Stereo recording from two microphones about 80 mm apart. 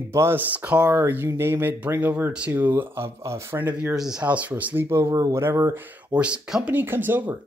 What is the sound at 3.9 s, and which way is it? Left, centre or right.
Speech, centre.